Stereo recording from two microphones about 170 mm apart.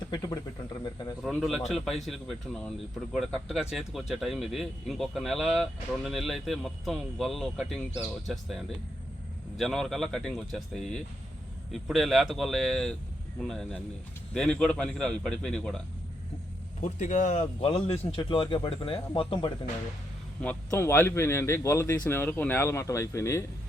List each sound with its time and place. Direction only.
0.1 s speech: 25° left (ahead or behind)
1.2 s speech: centre (ahead or behind)
16.8 s a man's voice: 45° left (ahead or behind)
20.4 s speech: 10° left (ahead or behind)